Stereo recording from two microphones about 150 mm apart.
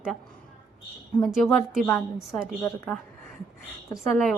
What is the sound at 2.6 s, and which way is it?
Speech, 15° left (ahead or behind).